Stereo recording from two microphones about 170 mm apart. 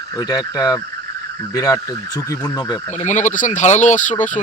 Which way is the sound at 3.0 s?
45° left (ahead or behind).